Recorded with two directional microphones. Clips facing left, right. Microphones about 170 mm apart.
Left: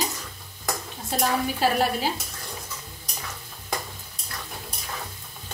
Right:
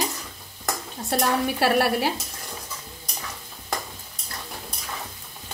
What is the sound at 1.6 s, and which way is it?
Speech, 70° right (ahead or behind).